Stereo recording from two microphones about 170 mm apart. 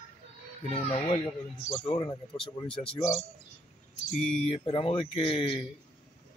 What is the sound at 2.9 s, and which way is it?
Speech, 40° left (ahead or behind).